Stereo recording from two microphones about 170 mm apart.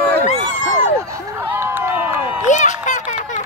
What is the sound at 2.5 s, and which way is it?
Speech, 45° left (ahead or behind).